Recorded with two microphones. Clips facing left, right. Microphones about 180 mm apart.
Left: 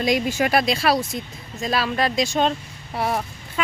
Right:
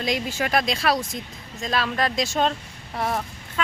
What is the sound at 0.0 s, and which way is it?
Speech, 10° left (ahead or behind).